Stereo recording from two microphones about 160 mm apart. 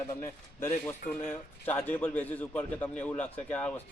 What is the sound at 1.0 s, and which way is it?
Speech, 65° left (ahead or behind).